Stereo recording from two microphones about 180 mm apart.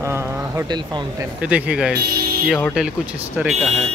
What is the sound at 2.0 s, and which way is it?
Speech, 60° right (ahead or behind).